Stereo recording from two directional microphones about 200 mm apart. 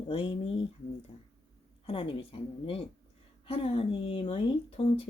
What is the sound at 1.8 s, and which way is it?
A woman's voice, 30° left (ahead or behind).